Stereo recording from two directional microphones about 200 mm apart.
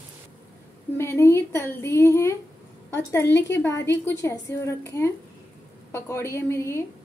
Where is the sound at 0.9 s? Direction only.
10° left (ahead or behind).